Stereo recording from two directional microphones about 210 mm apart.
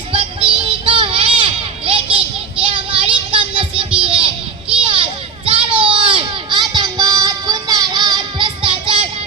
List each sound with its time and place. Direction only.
0.1 s music: 25° right (ahead or behind)
4.0 s a sound: 25° right (ahead or behind)
4.8 s children playing: 25° right (ahead or behind)
5.5 s child singing: 25° right (ahead or behind)